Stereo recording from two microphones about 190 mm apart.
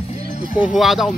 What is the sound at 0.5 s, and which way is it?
Speech, 5° right (ahead or behind).